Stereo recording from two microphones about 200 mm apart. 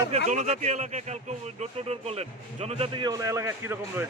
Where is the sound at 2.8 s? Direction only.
20° right (ahead or behind).